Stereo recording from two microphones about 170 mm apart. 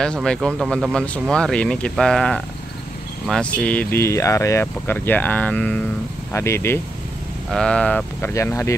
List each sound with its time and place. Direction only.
0.0 s speech: 5° left (ahead or behind)